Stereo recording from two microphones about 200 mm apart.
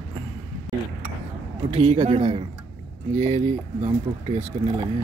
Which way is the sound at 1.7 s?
30° right (ahead or behind).